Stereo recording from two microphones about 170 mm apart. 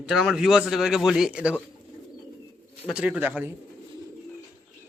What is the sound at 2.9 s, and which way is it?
Speech, 5° right (ahead or behind).